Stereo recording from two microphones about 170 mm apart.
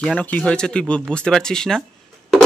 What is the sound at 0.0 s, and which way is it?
Speech, 5° left (ahead or behind).